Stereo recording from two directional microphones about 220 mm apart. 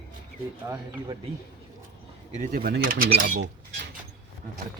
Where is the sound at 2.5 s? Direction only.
45° right (ahead or behind).